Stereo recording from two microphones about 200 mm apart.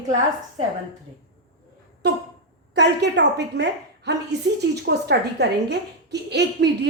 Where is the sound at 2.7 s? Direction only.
60° right (ahead or behind).